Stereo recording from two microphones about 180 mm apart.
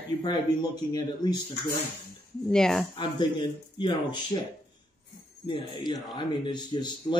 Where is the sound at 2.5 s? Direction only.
5° left (ahead or behind).